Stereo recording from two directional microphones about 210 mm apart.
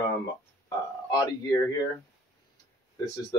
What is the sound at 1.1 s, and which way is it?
Speech, 15° left (ahead or behind).